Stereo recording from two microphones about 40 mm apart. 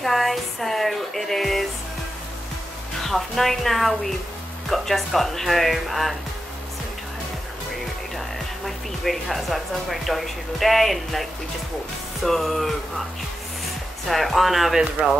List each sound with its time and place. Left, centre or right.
0.0 s music: centre
3.0 s speech: centre
8.6 s speech: centre
14.0 s speech: centre
15.0 s speech: right